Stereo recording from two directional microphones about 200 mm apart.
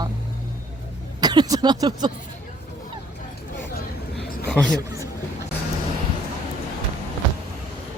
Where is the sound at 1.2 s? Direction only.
20° right (ahead or behind).